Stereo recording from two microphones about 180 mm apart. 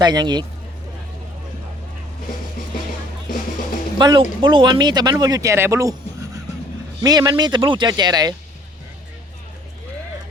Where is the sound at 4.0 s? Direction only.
25° right (ahead or behind).